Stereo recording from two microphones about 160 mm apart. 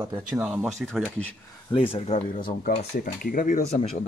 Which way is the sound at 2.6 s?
65° left (ahead or behind).